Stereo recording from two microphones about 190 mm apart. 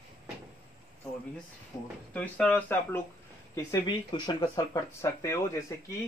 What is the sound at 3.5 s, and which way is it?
Speech, 20° left (ahead or behind).